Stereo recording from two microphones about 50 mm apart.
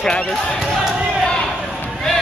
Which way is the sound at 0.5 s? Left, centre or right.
Centre.